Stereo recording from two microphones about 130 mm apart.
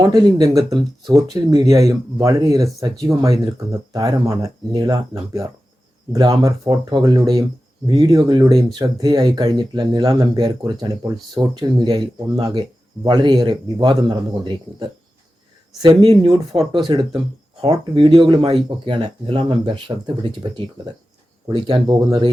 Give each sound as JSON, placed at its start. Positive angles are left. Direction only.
{"t": 0.0, "sound": "speech", "side_deg": -30}